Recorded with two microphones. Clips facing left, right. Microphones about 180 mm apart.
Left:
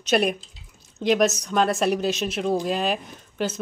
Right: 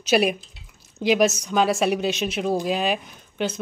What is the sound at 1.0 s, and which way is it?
Speech, centre (ahead or behind).